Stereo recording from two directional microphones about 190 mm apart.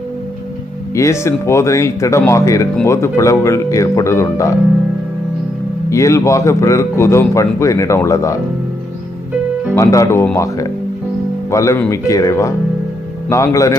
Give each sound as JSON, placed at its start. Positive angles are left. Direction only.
{"t": 0.9, "sound": "a man's voice", "side_deg": 15}
{"t": 5.9, "sound": "a man's voice", "side_deg": 15}
{"t": 9.7, "sound": "a man's voice", "side_deg": 15}